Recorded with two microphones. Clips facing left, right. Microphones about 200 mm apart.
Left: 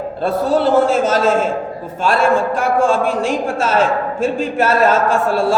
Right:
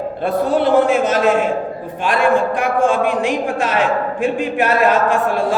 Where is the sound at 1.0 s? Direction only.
15° right (ahead or behind).